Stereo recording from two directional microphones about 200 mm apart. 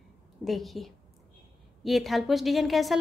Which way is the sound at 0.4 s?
Centre (ahead or behind).